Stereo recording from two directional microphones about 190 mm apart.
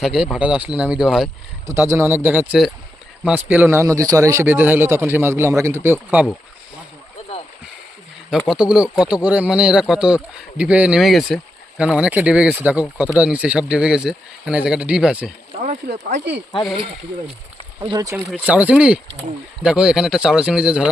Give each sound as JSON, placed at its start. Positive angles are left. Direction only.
{"t": 0.0, "sound": "speech", "side_deg": 0}
{"t": 1.6, "sound": "a man's voice", "side_deg": -15}
{"t": 8.4, "sound": "speech", "side_deg": -5}
{"t": 15.6, "sound": "speech", "side_deg": -40}
{"t": 17.7, "sound": "a man's voice", "side_deg": -15}